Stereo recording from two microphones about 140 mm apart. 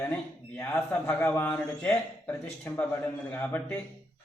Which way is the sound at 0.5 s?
15° left (ahead or behind).